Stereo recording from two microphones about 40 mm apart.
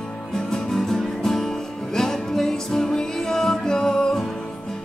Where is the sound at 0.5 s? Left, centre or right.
Centre.